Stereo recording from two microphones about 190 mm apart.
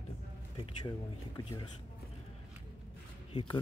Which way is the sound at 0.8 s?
20° left (ahead or behind).